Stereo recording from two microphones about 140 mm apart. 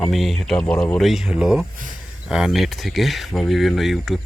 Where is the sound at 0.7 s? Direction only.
20° left (ahead or behind).